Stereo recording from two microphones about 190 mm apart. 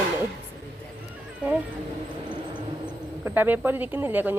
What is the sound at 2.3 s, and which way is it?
Vehicle, 25° right (ahead or behind).